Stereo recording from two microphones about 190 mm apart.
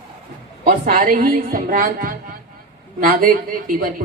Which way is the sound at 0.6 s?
45° right (ahead or behind).